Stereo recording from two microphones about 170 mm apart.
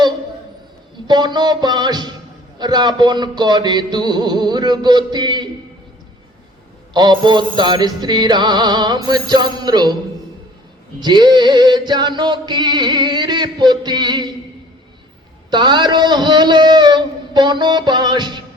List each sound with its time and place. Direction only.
1.0 s music: 25° right (ahead or behind)
6.9 s music: 25° right (ahead or behind)
11.0 s music: 25° right (ahead or behind)
15.4 s music: 25° right (ahead or behind)